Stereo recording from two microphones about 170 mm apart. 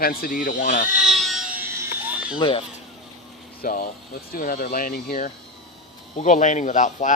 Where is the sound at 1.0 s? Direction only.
Centre (ahead or behind).